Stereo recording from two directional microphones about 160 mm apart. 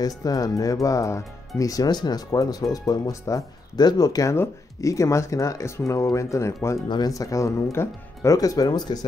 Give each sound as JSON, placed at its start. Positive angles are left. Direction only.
{"t": 0.0, "sound": "speech", "side_deg": 20}